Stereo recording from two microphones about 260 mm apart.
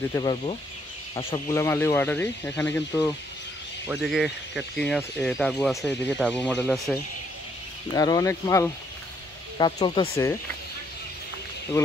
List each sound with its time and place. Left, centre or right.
0.1 s speech: centre